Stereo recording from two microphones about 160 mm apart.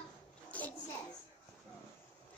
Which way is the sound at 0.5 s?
10° left (ahead or behind).